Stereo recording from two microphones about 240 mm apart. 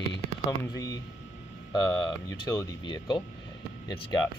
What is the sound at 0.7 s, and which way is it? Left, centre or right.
Speech, centre.